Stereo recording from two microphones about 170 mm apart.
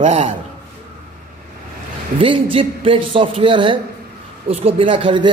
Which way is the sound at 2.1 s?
30° right (ahead or behind).